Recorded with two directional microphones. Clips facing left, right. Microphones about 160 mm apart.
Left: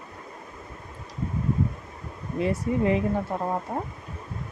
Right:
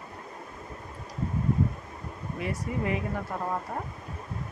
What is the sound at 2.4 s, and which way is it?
Speech, 30° left (ahead or behind).